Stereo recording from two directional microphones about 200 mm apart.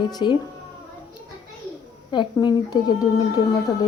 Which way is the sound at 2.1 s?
20° left (ahead or behind).